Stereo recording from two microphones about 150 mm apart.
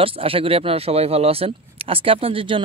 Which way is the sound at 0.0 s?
40° right (ahead or behind).